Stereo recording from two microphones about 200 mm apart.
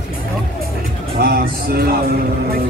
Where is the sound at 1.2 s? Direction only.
50° right (ahead or behind).